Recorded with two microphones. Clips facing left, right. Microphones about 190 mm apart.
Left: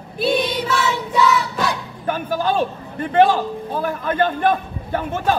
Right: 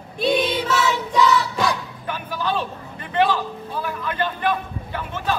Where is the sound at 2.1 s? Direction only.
45° left (ahead or behind).